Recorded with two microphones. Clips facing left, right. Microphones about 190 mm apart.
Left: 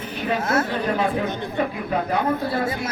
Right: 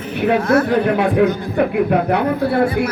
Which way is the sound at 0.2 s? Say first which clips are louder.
Right 8 dB; 60° right (ahead or behind).